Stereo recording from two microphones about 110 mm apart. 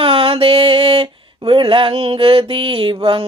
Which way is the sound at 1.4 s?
50° right (ahead or behind).